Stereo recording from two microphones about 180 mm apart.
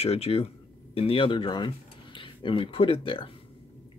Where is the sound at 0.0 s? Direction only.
35° left (ahead or behind).